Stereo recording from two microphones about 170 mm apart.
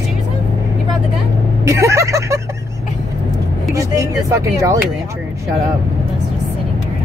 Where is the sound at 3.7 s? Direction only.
20° right (ahead or behind).